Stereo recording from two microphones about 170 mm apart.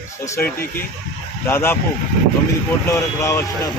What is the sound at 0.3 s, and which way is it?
A man's voice, 15° left (ahead or behind).